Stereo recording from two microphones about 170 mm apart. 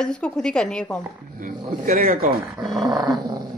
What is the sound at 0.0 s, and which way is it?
Speech, 5° left (ahead or behind).